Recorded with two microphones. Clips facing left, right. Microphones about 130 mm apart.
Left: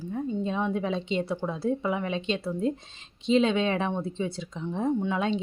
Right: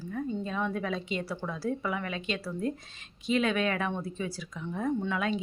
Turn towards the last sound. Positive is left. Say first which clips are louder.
# left 3 dB
turn(degrees=25)  # may be behind; listen again after turning